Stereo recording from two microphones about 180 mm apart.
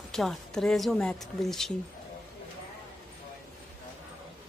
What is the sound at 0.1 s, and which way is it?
Speech, centre (ahead or behind).